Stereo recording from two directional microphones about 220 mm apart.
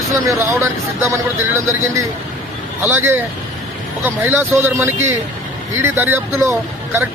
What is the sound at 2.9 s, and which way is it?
Speech, 10° right (ahead or behind).